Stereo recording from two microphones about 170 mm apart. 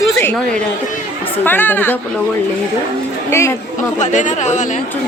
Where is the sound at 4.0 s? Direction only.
45° left (ahead or behind).